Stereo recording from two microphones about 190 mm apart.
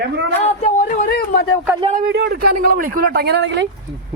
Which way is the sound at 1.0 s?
60° left (ahead or behind).